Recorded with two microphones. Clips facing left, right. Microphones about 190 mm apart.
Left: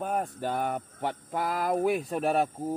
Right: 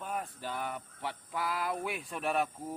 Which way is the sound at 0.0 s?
50° left (ahead or behind).